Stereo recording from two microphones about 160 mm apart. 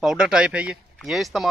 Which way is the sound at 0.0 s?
5° right (ahead or behind).